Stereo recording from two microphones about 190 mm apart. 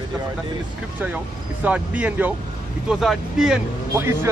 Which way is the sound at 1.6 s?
5° right (ahead or behind).